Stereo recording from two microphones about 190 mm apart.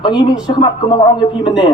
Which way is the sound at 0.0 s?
25° left (ahead or behind).